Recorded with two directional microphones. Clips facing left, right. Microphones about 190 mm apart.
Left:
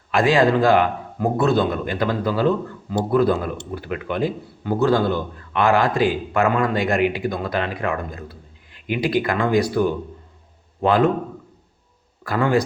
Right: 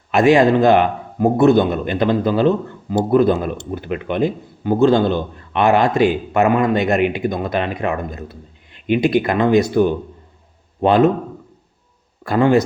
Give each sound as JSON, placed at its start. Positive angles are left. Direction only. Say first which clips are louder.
{"t": 0.1, "sound": "a man's voice", "louder": "right 4 dB", "side_deg": -20}
{"t": 12.2, "sound": "a man's voice", "louder": "right 5 dB", "side_deg": -25}